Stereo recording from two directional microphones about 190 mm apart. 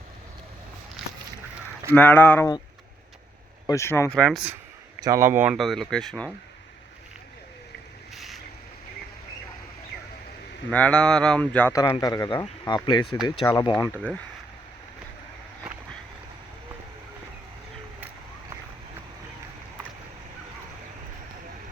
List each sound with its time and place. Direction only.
1.9 s speech: 10° left (ahead or behind)
3.7 s speech: 15° left (ahead or behind); by 4.5 s centre (ahead or behind)
4.9 s speech: 15° right (ahead or behind); by 6.3 s 5° left (ahead or behind)
8.1 s boat: centre (ahead or behind)
10.7 s speech: 5° left (ahead or behind)